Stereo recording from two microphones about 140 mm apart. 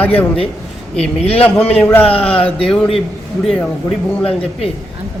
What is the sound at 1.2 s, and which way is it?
Speech, 45° left (ahead or behind).